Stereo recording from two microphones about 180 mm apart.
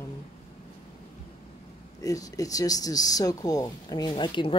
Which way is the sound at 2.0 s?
20° left (ahead or behind).